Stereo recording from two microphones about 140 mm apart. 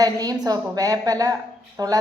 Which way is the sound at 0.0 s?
25° right (ahead or behind).